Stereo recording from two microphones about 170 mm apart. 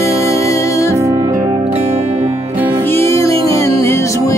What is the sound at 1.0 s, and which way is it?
Music, 20° right (ahead or behind).